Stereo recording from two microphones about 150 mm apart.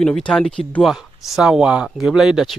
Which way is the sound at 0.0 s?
5° left (ahead or behind).